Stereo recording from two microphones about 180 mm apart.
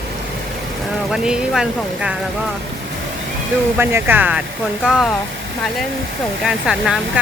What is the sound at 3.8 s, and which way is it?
Speech, 10° right (ahead or behind).